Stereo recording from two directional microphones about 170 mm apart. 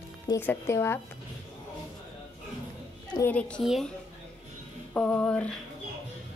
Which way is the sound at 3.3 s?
5° left (ahead or behind).